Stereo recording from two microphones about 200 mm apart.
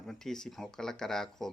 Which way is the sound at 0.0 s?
Centre (ahead or behind).